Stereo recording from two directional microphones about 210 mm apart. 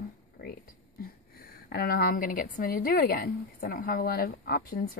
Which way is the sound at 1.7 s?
45° left (ahead or behind).